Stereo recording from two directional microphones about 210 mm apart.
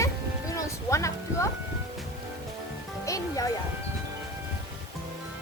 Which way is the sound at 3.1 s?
15° left (ahead or behind).